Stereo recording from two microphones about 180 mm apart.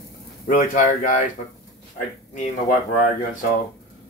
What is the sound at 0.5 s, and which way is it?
Speech, 45° left (ahead or behind).